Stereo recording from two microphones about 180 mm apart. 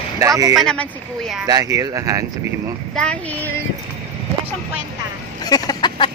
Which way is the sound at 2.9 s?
5° left (ahead or behind).